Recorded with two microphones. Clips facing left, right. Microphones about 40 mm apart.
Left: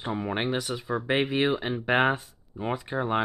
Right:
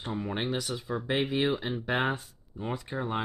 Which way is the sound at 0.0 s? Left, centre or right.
Left.